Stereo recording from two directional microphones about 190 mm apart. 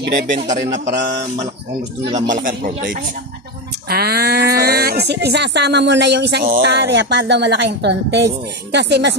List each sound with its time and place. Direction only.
0.3 s a man's voice: 40° right (ahead or behind)
2.2 s a man's voice: 45° right (ahead or behind); by 9.1 s 65° right (ahead or behind)